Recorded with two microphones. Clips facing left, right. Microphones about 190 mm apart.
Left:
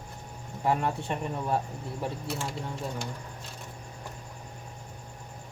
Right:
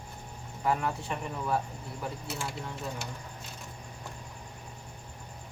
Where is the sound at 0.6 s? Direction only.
30° left (ahead or behind).